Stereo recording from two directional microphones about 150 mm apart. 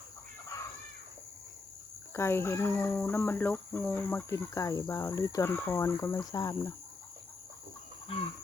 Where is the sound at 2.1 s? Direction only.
15° left (ahead or behind).